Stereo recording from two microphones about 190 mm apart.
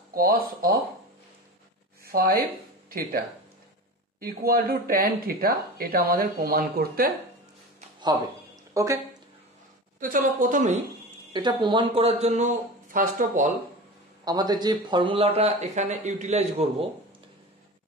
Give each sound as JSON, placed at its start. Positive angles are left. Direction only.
{"t": 0.1, "sound": "speech", "side_deg": -50}
{"t": 2.0, "sound": "speech", "side_deg": -50}
{"t": 4.2, "sound": "speech", "side_deg": -50}
{"t": 8.7, "sound": "speech", "side_deg": -15}
{"t": 9.9, "sound": "speech", "side_deg": -45}
{"t": 11.3, "sound": "a man's voice", "side_deg": -25}
{"t": 14.2, "sound": "a man's voice", "side_deg": -20}